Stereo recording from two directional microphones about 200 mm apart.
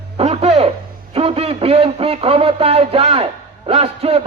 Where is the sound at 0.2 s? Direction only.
30° right (ahead or behind).